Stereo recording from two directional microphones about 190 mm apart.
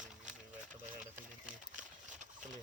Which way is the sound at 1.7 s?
40° right (ahead or behind).